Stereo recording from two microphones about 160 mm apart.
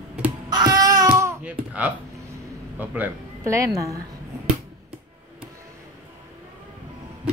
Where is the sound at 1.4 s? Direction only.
10° right (ahead or behind).